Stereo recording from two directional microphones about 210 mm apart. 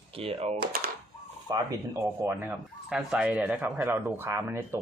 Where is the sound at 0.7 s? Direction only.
45° right (ahead or behind).